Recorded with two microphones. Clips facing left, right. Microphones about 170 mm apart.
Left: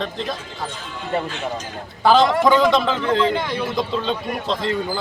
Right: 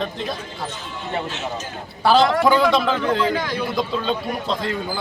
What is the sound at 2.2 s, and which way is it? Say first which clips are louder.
Speech: right 1 dB; 5° right (ahead or behind).